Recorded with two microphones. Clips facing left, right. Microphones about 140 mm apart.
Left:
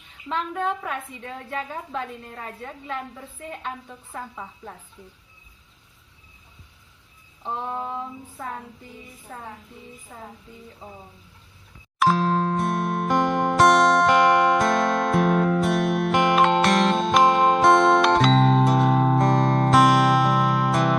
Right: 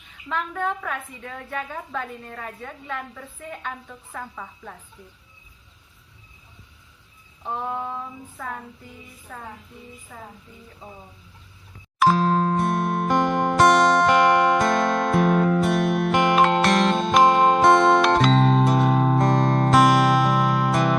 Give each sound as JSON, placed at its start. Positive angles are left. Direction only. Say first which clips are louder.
{"t": 0.3, "sound": "a woman's voice", "louder": "left 1 dB", "side_deg": 30}
{"t": 7.9, "sound": "a woman's voice", "louder": "left 1 dB", "side_deg": 25}
{"t": 10.8, "sound": "speech", "louder": "even", "side_deg": 0}
{"t": 11.9, "sound": "music", "louder": "right 2 dB", "side_deg": 0}